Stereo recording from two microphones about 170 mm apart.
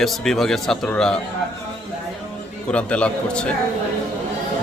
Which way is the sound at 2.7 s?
5° left (ahead or behind).